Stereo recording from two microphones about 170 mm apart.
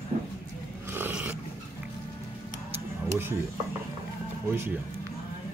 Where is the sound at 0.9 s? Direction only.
10° right (ahead or behind).